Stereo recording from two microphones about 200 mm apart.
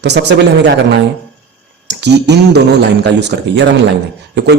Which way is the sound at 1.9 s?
60° right (ahead or behind).